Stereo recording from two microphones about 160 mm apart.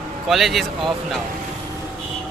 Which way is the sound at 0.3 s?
Centre (ahead or behind).